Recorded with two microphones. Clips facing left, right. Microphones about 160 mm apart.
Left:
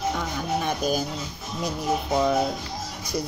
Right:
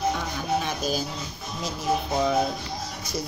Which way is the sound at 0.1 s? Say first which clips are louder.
Even; 50° left (ahead or behind).